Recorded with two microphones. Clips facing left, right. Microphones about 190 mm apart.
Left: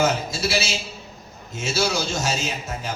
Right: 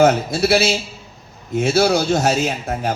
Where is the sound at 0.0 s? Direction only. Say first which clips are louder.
Right 8 dB; 60° right (ahead or behind).